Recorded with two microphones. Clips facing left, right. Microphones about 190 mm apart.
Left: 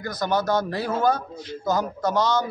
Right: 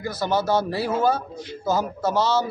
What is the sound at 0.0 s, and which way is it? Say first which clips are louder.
A man's voice: right 1 dB; 5° right (ahead or behind).